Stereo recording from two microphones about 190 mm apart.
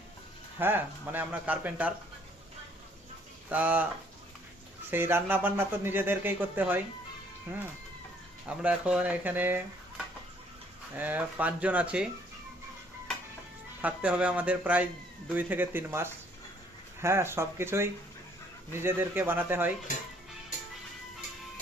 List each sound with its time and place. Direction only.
0.6 s speech: 10° right (ahead or behind)
3.5 s speech: 10° right (ahead or behind)
4.9 s speech: 10° right (ahead or behind)
10.9 s speech: 10° right (ahead or behind)
13.8 s speech: 5° right (ahead or behind)